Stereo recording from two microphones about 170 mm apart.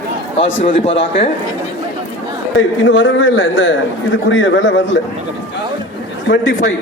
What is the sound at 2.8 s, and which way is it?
A man's voice, 90° left.